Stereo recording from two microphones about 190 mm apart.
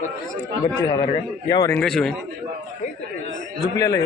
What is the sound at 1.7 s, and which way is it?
Speech, 5° left (ahead or behind).